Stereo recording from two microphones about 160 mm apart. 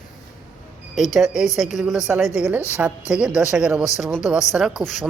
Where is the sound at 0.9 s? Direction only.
Centre (ahead or behind).